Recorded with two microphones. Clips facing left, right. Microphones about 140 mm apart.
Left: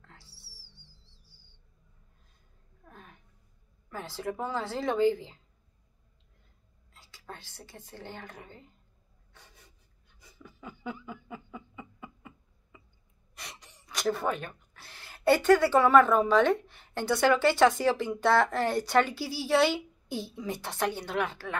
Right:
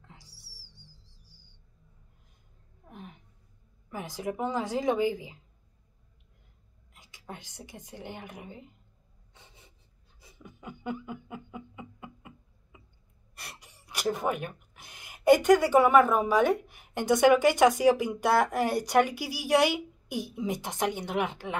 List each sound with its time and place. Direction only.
0.0 s music: 15° right (ahead or behind)
2.9 s a sound: 20° right (ahead or behind)
3.9 s a woman's voice: 15° right (ahead or behind)
6.9 s a woman's voice: 15° right (ahead or behind)
9.3 s rub: 20° right (ahead or behind)
10.6 s a sound: 15° right (ahead or behind)
13.3 s speech: 10° right (ahead or behind)